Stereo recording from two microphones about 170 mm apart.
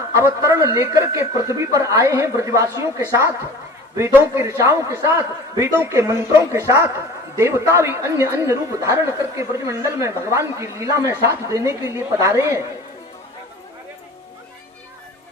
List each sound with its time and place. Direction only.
0.2 s a woman's voice: 20° right (ahead or behind)